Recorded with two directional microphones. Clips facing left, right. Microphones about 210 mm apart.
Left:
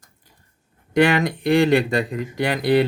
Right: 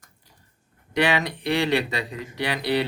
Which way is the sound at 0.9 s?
50° left (ahead or behind).